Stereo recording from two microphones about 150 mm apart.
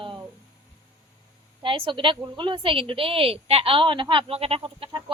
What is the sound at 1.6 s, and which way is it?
A woman's voice, 35° right (ahead or behind).